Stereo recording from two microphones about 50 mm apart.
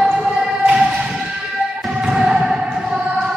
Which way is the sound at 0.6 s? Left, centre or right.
Right.